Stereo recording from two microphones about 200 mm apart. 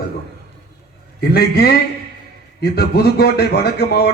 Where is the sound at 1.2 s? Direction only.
50° left (ahead or behind).